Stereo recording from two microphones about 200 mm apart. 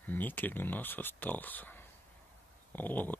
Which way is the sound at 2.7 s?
10° left (ahead or behind).